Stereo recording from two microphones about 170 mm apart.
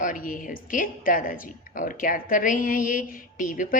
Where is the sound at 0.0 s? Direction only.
55° left (ahead or behind).